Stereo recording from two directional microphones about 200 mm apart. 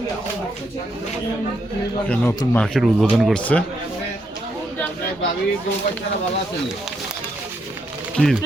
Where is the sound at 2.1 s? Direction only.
10° left (ahead or behind).